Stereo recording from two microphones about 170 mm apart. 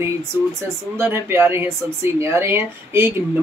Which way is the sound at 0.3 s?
15° right (ahead or behind).